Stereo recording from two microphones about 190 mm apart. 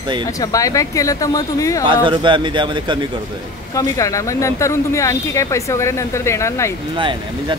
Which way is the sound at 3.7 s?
15° left (ahead or behind).